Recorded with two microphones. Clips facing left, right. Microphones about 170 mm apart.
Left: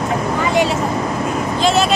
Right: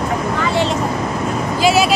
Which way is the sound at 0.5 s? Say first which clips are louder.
Left 3 dB; 10° left (ahead or behind).